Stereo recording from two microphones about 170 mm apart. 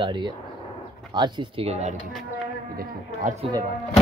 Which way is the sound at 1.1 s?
25° right (ahead or behind).